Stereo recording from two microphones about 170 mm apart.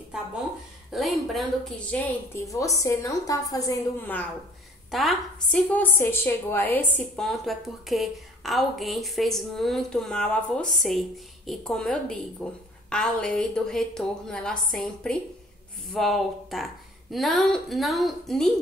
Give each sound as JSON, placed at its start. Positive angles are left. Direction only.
{"t": 0.9, "sound": "a woman's voice", "side_deg": 0}
{"t": 4.9, "sound": "a woman's voice", "side_deg": 0}